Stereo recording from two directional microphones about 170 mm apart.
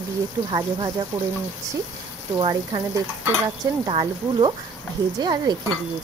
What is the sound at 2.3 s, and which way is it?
Speech, 30° right (ahead or behind).